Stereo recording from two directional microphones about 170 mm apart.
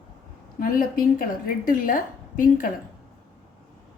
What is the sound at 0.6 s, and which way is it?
A woman's voice, 55° left (ahead or behind).